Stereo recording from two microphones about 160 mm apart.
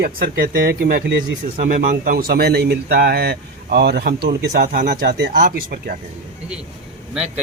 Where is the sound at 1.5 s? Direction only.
55° right (ahead or behind).